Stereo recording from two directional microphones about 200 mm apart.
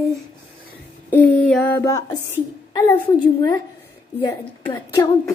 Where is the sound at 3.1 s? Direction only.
20° left (ahead or behind).